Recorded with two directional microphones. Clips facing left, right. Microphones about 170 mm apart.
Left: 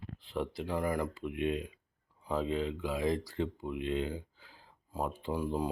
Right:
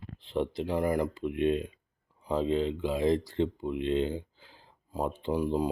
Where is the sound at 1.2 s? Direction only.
30° right (ahead or behind).